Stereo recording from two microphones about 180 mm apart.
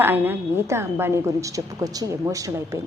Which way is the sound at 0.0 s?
10° right (ahead or behind).